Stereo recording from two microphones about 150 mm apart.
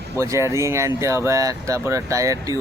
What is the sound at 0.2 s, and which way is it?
Speech, 20° right (ahead or behind).